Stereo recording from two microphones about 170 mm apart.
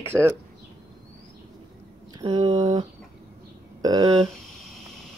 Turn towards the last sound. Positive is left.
turn(degrees=-25)  # may be behind; listen again after turning